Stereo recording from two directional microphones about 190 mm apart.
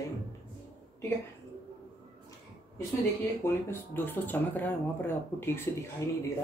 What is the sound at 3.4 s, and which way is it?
Speech, 10° left (ahead or behind).